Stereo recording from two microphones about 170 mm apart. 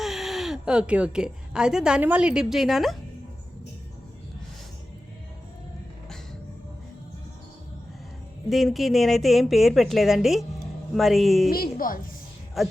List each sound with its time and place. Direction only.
0.0 s a woman's voice: centre (ahead or behind)
8.4 s a woman's voice: centre (ahead or behind)
11.5 s a woman's voice: 60° left (ahead or behind)
12.6 s a woman's voice: centre (ahead or behind)